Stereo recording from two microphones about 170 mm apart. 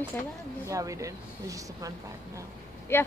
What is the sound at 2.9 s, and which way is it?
Speech, 15° left (ahead or behind).